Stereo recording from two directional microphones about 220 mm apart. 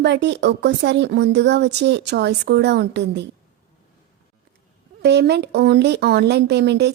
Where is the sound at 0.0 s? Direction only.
50° right (ahead or behind).